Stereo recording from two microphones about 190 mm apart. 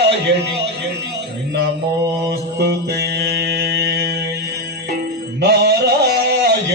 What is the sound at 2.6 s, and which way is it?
Mantra, 60° right (ahead or behind).